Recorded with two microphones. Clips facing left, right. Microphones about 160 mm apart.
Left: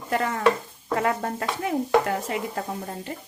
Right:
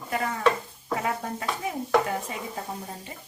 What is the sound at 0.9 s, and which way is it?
Speech, 75° left (ahead or behind).